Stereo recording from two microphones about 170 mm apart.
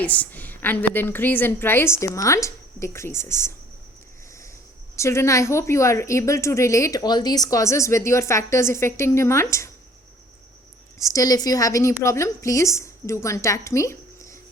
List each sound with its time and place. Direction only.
0.0 s speech: 10° left (ahead or behind)
4.9 s speech: 15° left (ahead or behind)
10.9 s speech: 20° left (ahead or behind)